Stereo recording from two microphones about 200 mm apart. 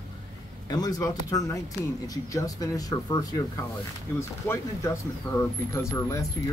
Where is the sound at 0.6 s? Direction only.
20° left (ahead or behind).